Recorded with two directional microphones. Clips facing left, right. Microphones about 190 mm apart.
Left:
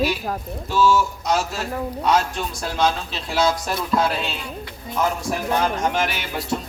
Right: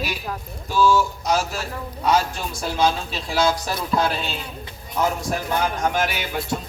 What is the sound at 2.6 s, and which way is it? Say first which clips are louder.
Speech: right 1 dB; 5° right (ahead or behind).